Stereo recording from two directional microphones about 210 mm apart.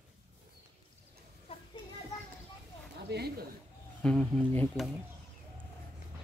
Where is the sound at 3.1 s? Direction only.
50° right (ahead or behind).